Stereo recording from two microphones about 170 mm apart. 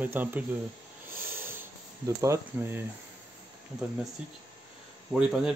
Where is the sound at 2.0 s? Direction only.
15° right (ahead or behind).